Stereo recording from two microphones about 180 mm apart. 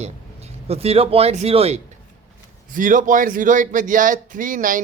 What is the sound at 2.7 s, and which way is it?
A man's voice, 45° right (ahead or behind).